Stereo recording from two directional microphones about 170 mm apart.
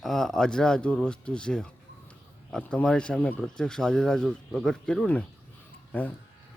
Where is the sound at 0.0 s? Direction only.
Centre (ahead or behind).